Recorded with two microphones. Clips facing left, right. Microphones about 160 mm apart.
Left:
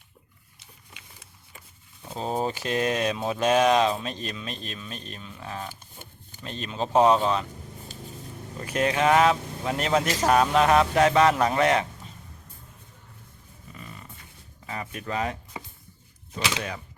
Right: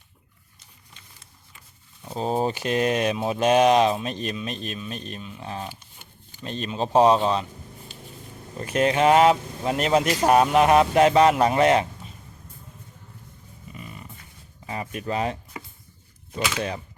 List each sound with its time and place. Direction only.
2.1 s speech: 20° right (ahead or behind)
8.6 s speech: 25° right (ahead or behind)
13.7 s a sound: 15° right (ahead or behind)
14.7 s speech: 25° right (ahead or behind)